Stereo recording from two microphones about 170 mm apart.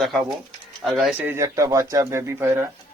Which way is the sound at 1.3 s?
20° right (ahead or behind).